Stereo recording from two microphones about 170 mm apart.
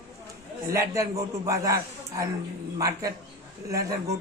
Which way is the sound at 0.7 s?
15° right (ahead or behind).